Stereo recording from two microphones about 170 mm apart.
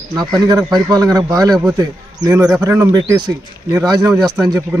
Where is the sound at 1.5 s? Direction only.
5° right (ahead or behind).